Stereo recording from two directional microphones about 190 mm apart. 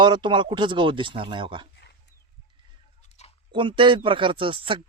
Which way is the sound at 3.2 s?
35° left (ahead or behind).